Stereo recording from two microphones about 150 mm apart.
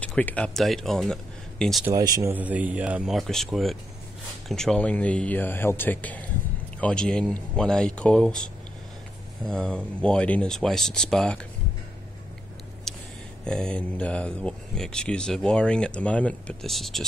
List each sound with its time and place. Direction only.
0.0 s speech: 10° left (ahead or behind)
1.9 s speech: 25° right (ahead or behind)
2.3 s speech: 10° right (ahead or behind)
12.9 s a sound: 5° left (ahead or behind)
13.4 s speech: 5° left (ahead or behind)